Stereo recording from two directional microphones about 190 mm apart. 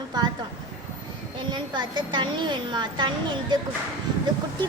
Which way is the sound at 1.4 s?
25° right (ahead or behind).